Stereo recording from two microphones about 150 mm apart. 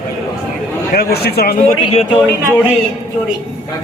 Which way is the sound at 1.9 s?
40° left (ahead or behind).